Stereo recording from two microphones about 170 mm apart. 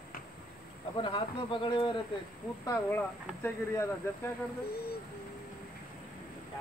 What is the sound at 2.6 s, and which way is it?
Speech, 15° left (ahead or behind).